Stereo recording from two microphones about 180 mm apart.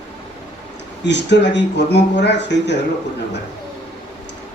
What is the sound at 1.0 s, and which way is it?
Speech, 75° left (ahead or behind).